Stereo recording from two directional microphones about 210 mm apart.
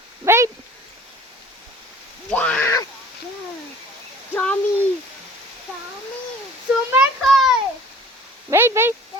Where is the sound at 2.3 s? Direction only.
5° left (ahead or behind).